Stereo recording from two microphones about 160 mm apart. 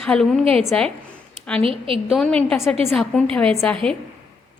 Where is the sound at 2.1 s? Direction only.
5° left (ahead or behind).